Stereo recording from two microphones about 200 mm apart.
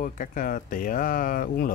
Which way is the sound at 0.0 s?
40° left (ahead or behind).